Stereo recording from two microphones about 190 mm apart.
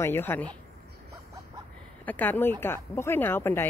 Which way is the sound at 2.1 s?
10° left (ahead or behind).